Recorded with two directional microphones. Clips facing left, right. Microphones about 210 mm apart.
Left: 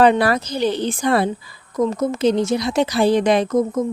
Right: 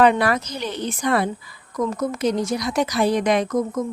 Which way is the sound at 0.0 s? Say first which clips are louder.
Left 2 dB; 30° left (ahead or behind).